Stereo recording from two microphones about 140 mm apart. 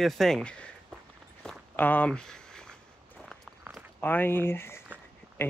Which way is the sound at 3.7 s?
10° right (ahead or behind).